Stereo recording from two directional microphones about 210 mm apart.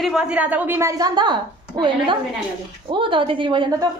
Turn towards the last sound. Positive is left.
turn(degrees=-20)  # may be behind; listen again after turning